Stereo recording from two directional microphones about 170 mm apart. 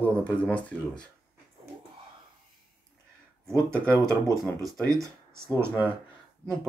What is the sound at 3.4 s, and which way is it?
Speech, 15° right (ahead or behind).